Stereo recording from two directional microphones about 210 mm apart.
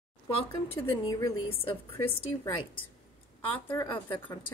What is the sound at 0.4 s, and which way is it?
A woman's voice, 25° left (ahead or behind).